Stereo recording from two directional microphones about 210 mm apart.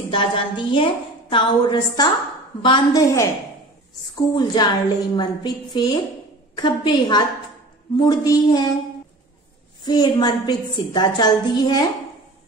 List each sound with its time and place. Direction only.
0.1 s a woman's voice: 25° left (ahead or behind)
4.4 s a woman's voice: 20° left (ahead or behind)
9.8 s a woman's voice: 20° left (ahead or behind)